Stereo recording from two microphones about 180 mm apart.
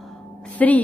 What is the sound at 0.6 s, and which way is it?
Speech, 5° left (ahead or behind).